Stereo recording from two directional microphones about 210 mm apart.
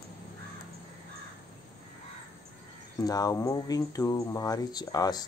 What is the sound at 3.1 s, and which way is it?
Speech, 15° left (ahead or behind).